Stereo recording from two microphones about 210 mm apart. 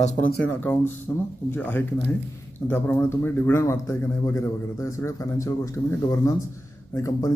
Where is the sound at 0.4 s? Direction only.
10° left (ahead or behind).